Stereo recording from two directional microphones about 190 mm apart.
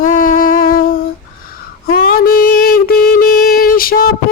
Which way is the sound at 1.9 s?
50° left (ahead or behind).